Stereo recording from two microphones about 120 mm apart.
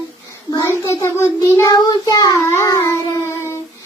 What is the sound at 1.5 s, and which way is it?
Child singing, 30° left (ahead or behind).